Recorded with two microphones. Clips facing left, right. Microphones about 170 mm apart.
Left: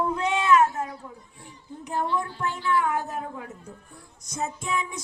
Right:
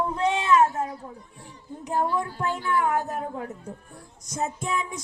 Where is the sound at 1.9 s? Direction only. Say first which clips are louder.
Right 2 dB; 40° right (ahead or behind).